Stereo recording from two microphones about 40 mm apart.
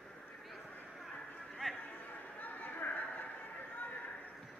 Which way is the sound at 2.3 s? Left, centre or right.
Left.